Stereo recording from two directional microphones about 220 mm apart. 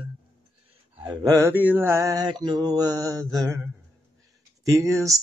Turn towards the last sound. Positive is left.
turn(degrees=-15)  # may be behind; listen again after turning